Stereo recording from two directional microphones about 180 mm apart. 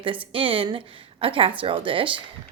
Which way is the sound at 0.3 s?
30° right (ahead or behind).